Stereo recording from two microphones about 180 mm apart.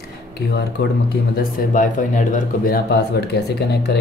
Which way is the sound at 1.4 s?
45° left (ahead or behind).